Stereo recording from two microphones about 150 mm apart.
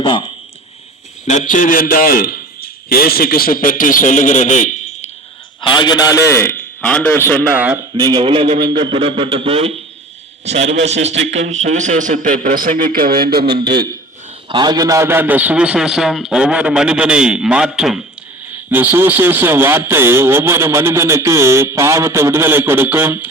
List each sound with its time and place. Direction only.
0.0 s speech: 30° left (ahead or behind)
1.3 s a man's voice: 55° left (ahead or behind)
5.6 s a man's voice: 30° left (ahead or behind); by 7.4 s 15° left (ahead or behind)
7.5 s a man's voice: 10° right (ahead or behind)
7.9 s a man's voice: 30° right (ahead or behind); by 13.6 s 90° right
13.6 s a man's voice: 30° right (ahead or behind); by 23.2 s 15° right (ahead or behind)